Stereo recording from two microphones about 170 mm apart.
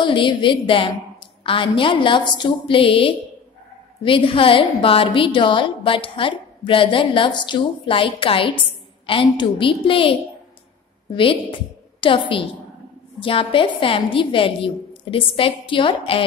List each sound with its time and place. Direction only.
0.0 s a woman's voice: 30° left (ahead or behind)
11.1 s a woman's voice: 30° left (ahead or behind)